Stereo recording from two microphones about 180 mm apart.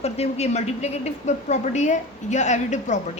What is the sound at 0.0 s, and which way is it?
A woman's voice, 35° left (ahead or behind).